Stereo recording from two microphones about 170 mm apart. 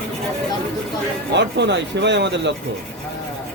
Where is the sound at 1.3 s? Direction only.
90° right.